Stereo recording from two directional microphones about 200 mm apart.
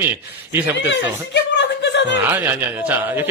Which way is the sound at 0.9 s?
60° left (ahead or behind).